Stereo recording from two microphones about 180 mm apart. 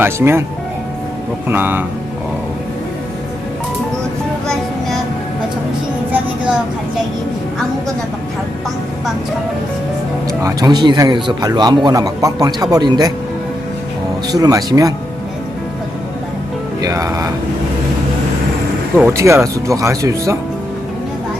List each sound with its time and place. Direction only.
0.0 s speech: 15° right (ahead or behind)
1.5 s speech: 10° right (ahead or behind)
6.1 s vehicle: 5° right (ahead or behind)
10.4 s speech: 20° right (ahead or behind)
14.3 s speech: 20° right (ahead or behind)
16.8 s speech: 20° right (ahead or behind)
18.9 s speech: 15° right (ahead or behind)